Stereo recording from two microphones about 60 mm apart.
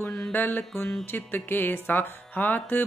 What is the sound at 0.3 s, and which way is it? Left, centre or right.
Speech, left.